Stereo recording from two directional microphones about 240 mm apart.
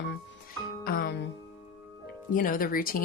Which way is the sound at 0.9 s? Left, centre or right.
Left.